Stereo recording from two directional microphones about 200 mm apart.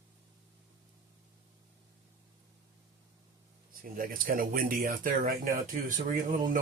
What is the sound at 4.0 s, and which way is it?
Speech, 45° right (ahead or behind).